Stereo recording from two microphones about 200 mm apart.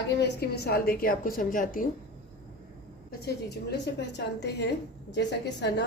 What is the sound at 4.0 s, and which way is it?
A woman's voice, 60° left (ahead or behind).